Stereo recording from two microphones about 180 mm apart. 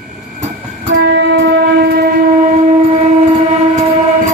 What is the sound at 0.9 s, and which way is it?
Train, 55° right (ahead or behind).